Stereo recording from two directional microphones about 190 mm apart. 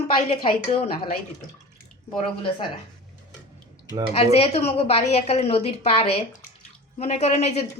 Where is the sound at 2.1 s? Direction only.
25° left (ahead or behind).